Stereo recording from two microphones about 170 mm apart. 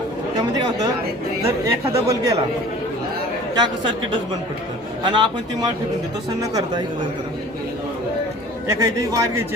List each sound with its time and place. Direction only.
1.5 s speech: 20° right (ahead or behind)
3.5 s speech: 25° right (ahead or behind)
5.0 s speech: 25° right (ahead or behind)
8.6 s speech: 20° right (ahead or behind)